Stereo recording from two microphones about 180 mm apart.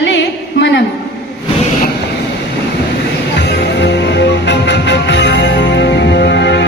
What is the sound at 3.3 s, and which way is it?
Music, 75° left (ahead or behind).